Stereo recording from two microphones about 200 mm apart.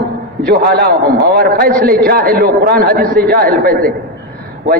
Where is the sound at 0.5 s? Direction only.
50° right (ahead or behind).